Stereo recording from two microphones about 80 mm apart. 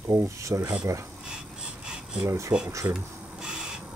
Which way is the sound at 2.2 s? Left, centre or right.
Right.